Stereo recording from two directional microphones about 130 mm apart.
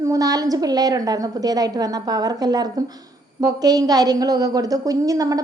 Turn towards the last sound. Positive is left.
turn(degrees=-25)  # may be behind; listen again after turning